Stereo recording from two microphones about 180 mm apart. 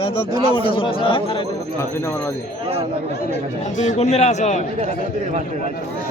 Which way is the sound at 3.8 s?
40° left (ahead or behind).